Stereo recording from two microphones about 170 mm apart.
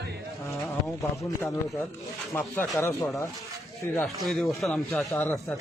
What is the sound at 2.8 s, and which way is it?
A man's voice, 15° left (ahead or behind).